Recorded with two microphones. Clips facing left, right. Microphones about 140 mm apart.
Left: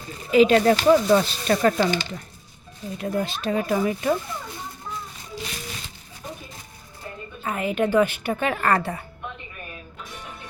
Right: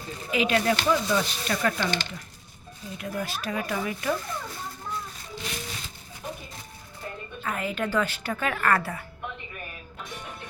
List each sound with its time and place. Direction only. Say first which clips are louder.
0.3 s speech: left 8 dB; 35° left (ahead or behind)
3.0 s speech: left 6 dB; 25° left (ahead or behind)
7.4 s speech: left 6 dB; 20° left (ahead or behind)